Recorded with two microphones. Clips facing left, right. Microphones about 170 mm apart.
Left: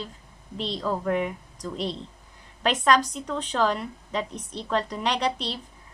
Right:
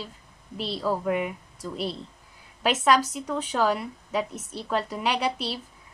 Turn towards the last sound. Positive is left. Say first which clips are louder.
# even
turn(degrees=-5)  # may be behind; listen again after turning